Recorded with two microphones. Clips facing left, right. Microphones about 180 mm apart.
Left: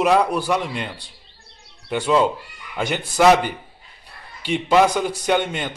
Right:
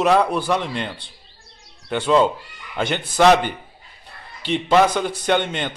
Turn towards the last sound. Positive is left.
turn(degrees=10)  # may be behind; listen again after turning